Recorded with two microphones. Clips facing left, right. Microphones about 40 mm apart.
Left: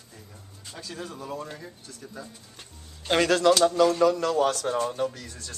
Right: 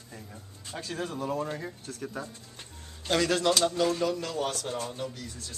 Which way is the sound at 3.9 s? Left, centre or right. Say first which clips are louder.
Left 8 dB; left.